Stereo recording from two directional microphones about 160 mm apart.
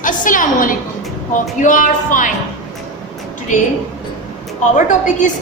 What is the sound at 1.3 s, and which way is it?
A woman's voice, 55° left (ahead or behind).